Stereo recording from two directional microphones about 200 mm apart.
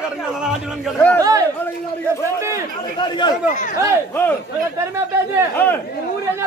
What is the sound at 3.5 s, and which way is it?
Speech, 40° left (ahead or behind).